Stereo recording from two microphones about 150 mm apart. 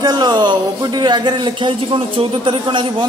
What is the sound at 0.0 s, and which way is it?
Speech, 25° right (ahead or behind).